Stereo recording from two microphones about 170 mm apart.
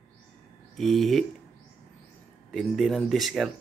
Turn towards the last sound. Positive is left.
turn(degrees=0)  # may be behind; listen again after turning